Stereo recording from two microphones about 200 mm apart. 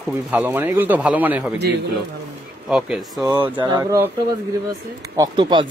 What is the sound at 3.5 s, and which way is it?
Speech, 20° right (ahead or behind).